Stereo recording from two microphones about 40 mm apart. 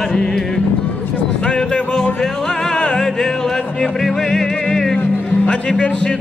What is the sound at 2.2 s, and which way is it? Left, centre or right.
Music, centre.